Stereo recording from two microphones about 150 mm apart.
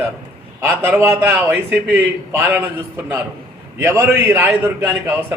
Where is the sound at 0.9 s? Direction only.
10° right (ahead or behind).